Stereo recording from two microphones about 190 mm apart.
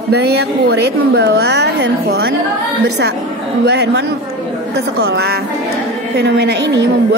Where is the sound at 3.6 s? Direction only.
60° right (ahead or behind).